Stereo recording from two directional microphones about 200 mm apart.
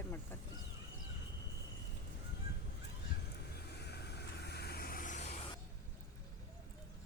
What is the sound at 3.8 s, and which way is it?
Vehicle, 55° left (ahead or behind).